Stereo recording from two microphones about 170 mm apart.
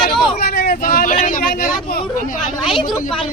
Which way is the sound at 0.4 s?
60° left (ahead or behind).